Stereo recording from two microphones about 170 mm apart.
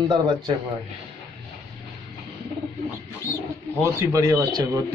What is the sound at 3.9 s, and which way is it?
Speech, 15° right (ahead or behind).